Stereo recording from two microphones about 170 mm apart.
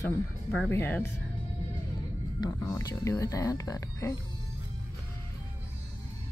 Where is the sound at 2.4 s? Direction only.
20° left (ahead or behind).